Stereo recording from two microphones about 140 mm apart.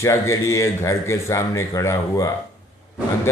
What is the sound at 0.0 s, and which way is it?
Speech, 20° left (ahead or behind).